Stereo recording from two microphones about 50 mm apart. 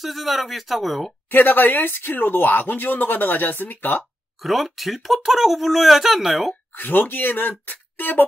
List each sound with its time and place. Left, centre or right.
0.0 s speech: centre
1.3 s speech: left
4.4 s speech: centre
6.8 s speech: left